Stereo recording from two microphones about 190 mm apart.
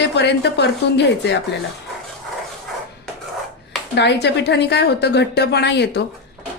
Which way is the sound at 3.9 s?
65° left (ahead or behind).